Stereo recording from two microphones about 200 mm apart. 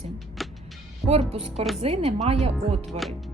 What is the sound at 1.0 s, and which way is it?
Speech, centre (ahead or behind).